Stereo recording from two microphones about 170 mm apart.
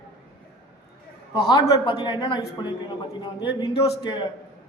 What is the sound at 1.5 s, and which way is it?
Speech, 25° left (ahead or behind).